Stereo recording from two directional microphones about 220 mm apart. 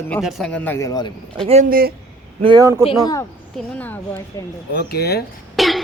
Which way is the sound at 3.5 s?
5° left (ahead or behind).